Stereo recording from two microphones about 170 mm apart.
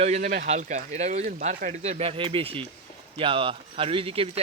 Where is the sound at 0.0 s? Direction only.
40° right (ahead or behind).